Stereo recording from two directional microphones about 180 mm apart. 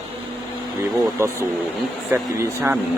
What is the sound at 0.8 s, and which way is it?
Speech, 15° right (ahead or behind).